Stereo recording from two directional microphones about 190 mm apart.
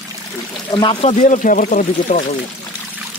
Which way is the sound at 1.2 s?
45° left (ahead or behind).